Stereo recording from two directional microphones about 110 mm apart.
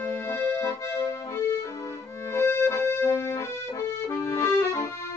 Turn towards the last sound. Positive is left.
turn(degrees=25)  # may be behind; listen again after turning